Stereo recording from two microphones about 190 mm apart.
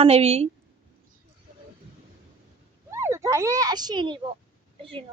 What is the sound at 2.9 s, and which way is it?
Speech, 15° right (ahead or behind).